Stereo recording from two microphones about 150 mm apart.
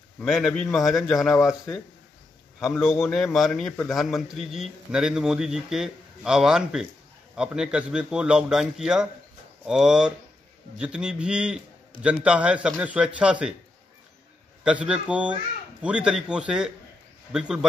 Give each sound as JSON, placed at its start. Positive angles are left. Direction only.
{"t": 0.2, "sound": "a man's voice", "side_deg": 0}
{"t": 1.3, "sound": "speech", "side_deg": 20}
{"t": 2.6, "sound": "a man's voice", "side_deg": 0}
{"t": 14.6, "sound": "a man's voice", "side_deg": -5}